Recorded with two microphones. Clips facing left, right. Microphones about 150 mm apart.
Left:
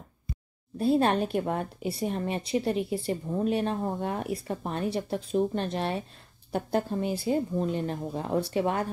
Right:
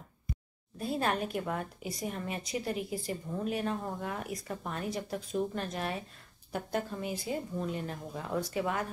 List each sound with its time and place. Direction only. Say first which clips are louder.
0.7 s a woman's voice: left 8 dB; 30° left (ahead or behind)